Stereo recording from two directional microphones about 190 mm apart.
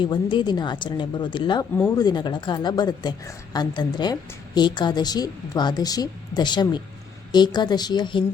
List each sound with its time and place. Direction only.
0.0 s a woman's voice: 25° left (ahead or behind)